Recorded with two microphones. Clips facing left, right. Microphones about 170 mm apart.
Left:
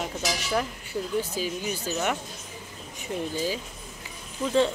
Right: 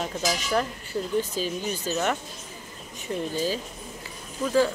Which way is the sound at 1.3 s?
10° left (ahead or behind).